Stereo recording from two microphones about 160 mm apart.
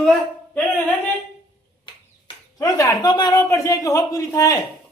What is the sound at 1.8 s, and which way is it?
Speech, 25° left (ahead or behind).